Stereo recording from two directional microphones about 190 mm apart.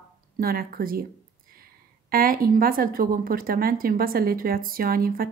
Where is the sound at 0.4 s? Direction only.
50° right (ahead or behind).